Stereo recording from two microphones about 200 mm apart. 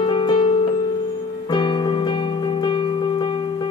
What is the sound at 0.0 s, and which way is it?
Music, 20° left (ahead or behind).